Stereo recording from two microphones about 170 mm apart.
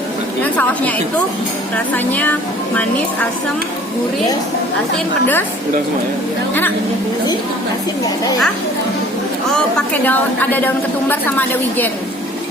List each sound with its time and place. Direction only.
0.4 s a woman's voice: 10° left (ahead or behind)
2.0 s a woman's voice: 10° left (ahead or behind)
5.2 s a woman's voice: 10° left (ahead or behind)
9.9 s a woman's voice: 10° left (ahead or behind)